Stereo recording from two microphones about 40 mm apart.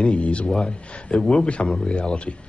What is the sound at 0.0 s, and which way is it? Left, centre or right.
Speech, left.